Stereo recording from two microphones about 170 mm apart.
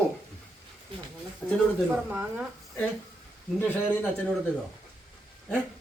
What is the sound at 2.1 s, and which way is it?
Speech, 10° right (ahead or behind).